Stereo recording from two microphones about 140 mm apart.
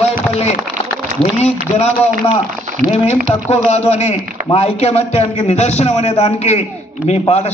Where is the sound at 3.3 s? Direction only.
35° left (ahead or behind).